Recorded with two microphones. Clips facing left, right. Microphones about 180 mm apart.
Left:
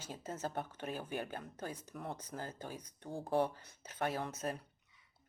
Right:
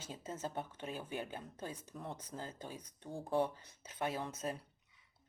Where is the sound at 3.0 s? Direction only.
Centre (ahead or behind).